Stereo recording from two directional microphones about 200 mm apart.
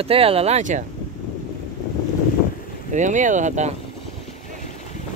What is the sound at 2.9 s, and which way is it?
Speech, 40° right (ahead or behind).